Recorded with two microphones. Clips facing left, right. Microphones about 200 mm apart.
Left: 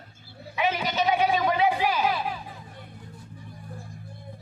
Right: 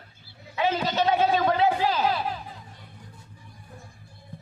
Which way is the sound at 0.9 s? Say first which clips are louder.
Right 1 dB; 15° left (ahead or behind).